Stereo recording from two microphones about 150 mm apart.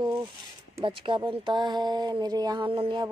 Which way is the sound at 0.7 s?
35° right (ahead or behind).